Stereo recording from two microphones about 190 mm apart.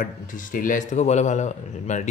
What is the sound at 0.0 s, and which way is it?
A man's voice, 45° left (ahead or behind).